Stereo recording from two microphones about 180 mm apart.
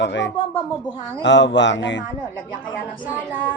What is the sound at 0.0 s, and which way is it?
A man's voice, 80° left.